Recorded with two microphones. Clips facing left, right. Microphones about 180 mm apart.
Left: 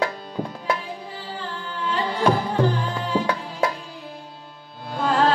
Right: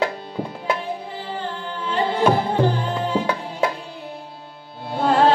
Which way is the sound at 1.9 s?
25° right (ahead or behind).